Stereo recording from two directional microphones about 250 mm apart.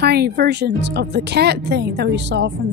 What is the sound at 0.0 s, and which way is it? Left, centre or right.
Speech, right.